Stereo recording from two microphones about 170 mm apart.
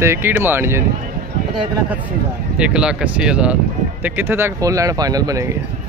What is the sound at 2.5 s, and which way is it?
Speech, 5° right (ahead or behind).